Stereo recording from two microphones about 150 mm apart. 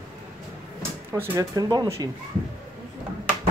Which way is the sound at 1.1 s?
20° right (ahead or behind).